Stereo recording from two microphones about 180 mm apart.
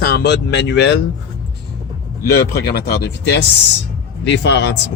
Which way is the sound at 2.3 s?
60° left (ahead or behind).